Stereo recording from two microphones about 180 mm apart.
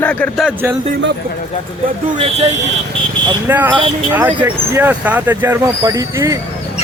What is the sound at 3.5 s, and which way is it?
Speech, 10° right (ahead or behind).